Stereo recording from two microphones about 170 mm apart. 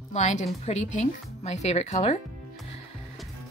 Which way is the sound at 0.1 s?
45° left (ahead or behind).